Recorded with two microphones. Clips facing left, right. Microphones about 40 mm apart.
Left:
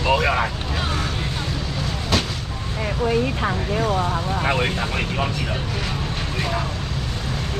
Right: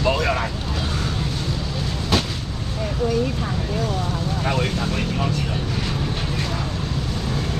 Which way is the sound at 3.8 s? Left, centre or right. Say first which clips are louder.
Left 4 dB; left.